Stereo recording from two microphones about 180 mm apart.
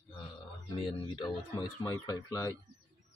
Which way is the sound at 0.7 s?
25° left (ahead or behind).